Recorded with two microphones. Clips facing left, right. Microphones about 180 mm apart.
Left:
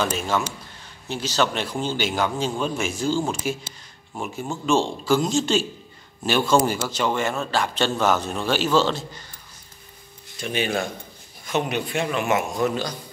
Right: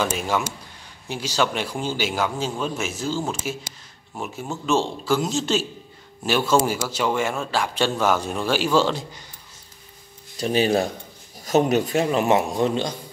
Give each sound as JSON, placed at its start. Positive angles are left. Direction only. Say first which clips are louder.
{"t": 0.0, "sound": "a man's voice", "louder": "even", "side_deg": -10}
{"t": 10.3, "sound": "a man's voice", "louder": "right 5 dB", "side_deg": -35}